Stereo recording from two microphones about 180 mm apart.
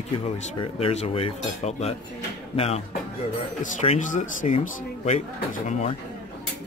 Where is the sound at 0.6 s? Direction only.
35° left (ahead or behind).